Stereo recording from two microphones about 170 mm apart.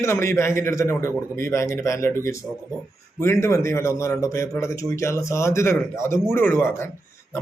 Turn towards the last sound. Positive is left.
turn(degrees=15)  # may be behind; listen again after turning